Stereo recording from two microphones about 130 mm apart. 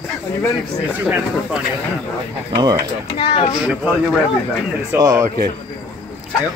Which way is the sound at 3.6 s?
10° right (ahead or behind).